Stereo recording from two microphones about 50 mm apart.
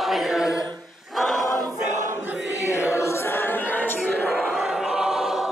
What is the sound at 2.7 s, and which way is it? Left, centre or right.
Choir, left.